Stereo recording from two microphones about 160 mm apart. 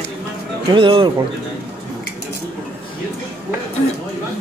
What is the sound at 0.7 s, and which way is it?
Speech, 30° right (ahead or behind).